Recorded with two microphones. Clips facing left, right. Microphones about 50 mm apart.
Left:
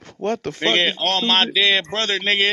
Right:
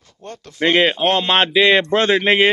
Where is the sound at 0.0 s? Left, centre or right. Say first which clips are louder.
Left 12 dB; left.